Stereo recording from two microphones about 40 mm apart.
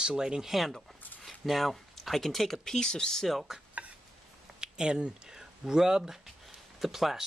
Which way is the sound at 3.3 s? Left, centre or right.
Centre.